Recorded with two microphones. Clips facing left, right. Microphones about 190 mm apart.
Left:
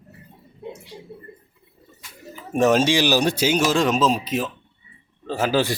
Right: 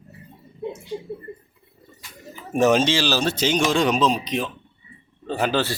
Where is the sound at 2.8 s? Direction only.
15° left (ahead or behind).